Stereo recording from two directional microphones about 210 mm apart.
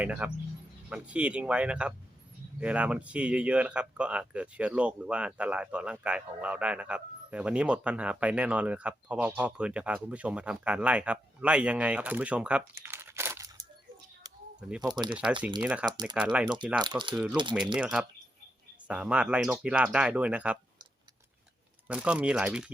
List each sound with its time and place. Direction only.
0.0 s speech: 5° right (ahead or behind)
15.1 s speech: 5° right (ahead or behind)
15.9 s speech: 20° right (ahead or behind)
16.1 s speech: 5° right (ahead or behind)
16.8 s speech: 20° right (ahead or behind)
17.7 s speech: 5° right (ahead or behind)
21.8 s speech: 5° right (ahead or behind)